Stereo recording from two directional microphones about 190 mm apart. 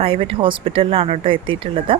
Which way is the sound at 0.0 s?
30° right (ahead or behind).